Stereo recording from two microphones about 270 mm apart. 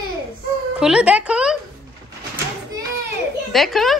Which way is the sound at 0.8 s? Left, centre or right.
Centre.